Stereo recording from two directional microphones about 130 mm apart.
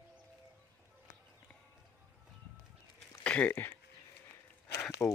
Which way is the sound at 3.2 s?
10° left (ahead or behind).